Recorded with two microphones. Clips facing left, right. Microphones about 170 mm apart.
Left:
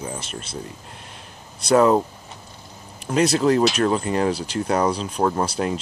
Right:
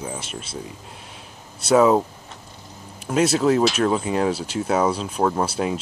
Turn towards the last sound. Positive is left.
turn(degrees=-5)  # may be behind; listen again after turning